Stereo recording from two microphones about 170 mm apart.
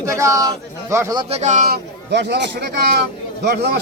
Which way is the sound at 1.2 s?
40° right (ahead or behind).